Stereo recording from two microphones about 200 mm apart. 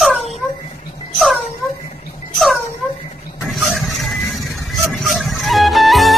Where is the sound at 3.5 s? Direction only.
Centre (ahead or behind).